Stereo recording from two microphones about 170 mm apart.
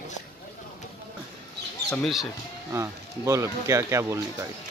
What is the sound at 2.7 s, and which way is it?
Speech, 15° right (ahead or behind).